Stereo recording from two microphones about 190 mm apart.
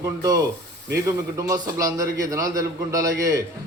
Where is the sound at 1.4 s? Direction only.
15° right (ahead or behind).